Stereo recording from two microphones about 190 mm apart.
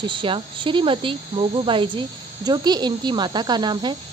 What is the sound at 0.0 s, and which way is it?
Speech, 25° right (ahead or behind).